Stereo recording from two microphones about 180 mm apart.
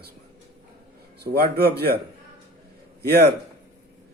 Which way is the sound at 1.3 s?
60° right (ahead or behind).